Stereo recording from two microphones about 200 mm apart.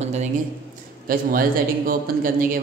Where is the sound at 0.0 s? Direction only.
35° right (ahead or behind).